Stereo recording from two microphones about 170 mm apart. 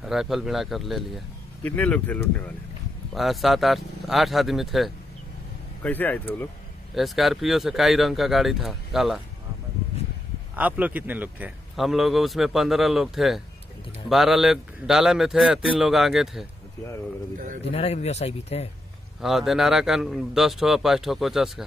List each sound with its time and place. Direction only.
0.0 s a man's voice: centre (ahead or behind)
5.8 s speech: 10° left (ahead or behind)
7.0 s a man's voice: centre (ahead or behind)
10.5 s a man's voice: 10° right (ahead or behind)
17.6 s speech: 40° left (ahead or behind)
19.2 s a man's voice: centre (ahead or behind)